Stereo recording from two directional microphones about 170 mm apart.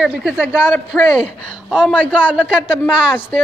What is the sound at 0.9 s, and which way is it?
A man's voice, 5° left (ahead or behind).